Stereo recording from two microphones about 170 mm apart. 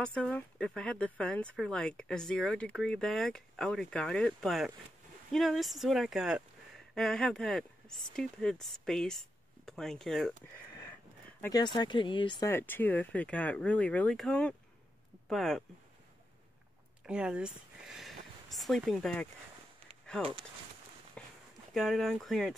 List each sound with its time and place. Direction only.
0.0 s speech: 5° left (ahead or behind)
11.5 s speech: 25° left (ahead or behind)
12.4 s speech: 15° left (ahead or behind)
17.0 s speech: 5° right (ahead or behind)
21.2 s a sound: 5° left (ahead or behind)
21.7 s speech: centre (ahead or behind)